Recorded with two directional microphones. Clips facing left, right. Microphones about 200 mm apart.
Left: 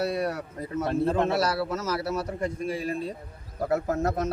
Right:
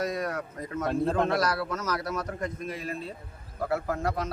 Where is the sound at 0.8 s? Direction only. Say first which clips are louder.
Left 2 dB; 5° left (ahead or behind).